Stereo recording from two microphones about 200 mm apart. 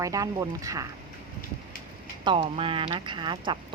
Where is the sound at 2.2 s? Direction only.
25° right (ahead or behind).